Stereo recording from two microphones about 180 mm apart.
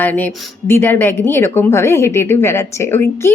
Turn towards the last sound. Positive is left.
turn(degrees=15)  # may be behind; listen again after turning